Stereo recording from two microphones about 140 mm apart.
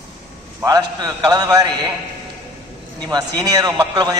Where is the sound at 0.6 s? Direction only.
30° right (ahead or behind).